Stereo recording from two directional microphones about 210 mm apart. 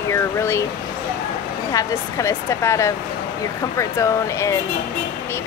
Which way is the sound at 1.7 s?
15° left (ahead or behind).